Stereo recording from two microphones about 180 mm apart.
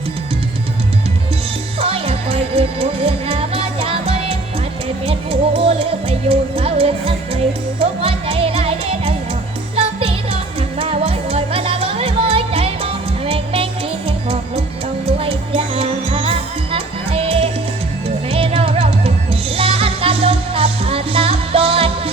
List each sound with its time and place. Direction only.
1.8 s music: 30° right (ahead or behind)
15.0 s music: 30° right (ahead or behind)